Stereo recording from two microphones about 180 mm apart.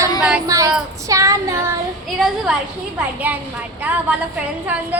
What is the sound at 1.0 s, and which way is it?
Female singing, 15° right (ahead or behind).